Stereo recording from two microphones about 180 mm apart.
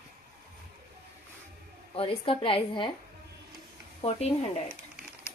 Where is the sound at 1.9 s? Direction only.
30° left (ahead or behind).